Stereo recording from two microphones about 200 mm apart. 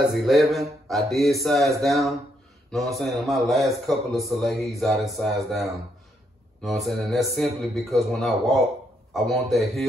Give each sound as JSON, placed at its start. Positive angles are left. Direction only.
{"t": 0.1, "sound": "speech", "side_deg": 0}